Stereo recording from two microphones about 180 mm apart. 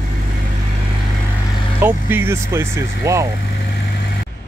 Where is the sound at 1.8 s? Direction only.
10° right (ahead or behind).